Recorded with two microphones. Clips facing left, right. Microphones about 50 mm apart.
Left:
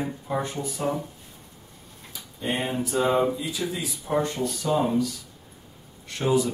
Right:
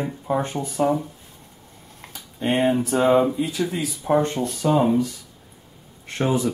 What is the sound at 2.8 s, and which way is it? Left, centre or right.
Mantra, right.